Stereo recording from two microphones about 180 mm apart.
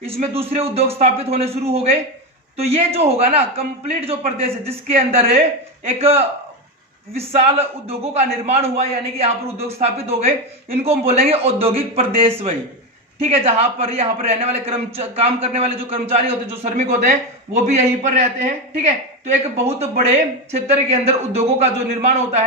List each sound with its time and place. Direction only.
0.0 s a man's voice: 35° right (ahead or behind)